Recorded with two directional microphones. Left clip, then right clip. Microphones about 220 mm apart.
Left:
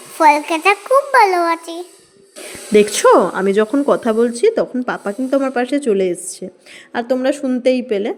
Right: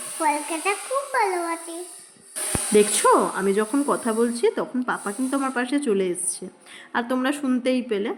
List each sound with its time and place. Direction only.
0.2 s a child's voice: 45° left (ahead or behind)
2.7 s speech: 25° left (ahead or behind)